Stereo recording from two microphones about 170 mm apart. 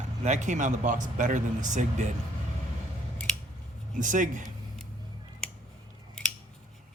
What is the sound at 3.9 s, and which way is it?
Speech, 50° right (ahead or behind).